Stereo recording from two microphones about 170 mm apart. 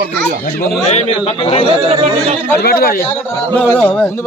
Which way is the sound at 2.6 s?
65° left (ahead or behind).